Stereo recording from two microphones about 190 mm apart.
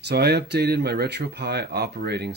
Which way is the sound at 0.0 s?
60° right (ahead or behind).